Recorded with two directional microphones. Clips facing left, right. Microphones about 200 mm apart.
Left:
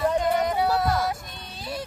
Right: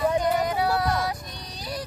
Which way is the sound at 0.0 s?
Centre (ahead or behind).